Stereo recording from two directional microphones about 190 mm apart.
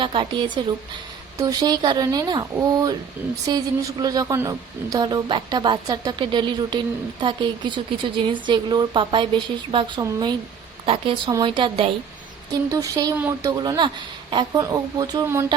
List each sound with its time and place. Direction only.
0.0 s a woman's voice: 25° right (ahead or behind)